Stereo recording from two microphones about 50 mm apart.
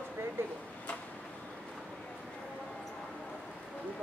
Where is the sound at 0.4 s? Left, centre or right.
Right.